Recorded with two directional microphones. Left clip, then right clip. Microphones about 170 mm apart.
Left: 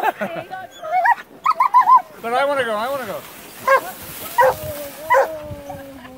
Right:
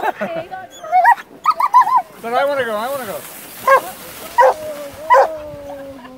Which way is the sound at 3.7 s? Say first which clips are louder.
Right 3 dB; 30° right (ahead or behind).